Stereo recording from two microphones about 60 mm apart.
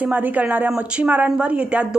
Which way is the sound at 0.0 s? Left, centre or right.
Right.